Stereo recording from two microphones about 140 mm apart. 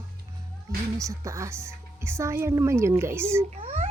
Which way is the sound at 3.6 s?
50° right (ahead or behind).